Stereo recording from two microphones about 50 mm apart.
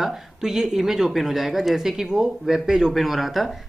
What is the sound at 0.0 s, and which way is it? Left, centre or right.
Speech, centre.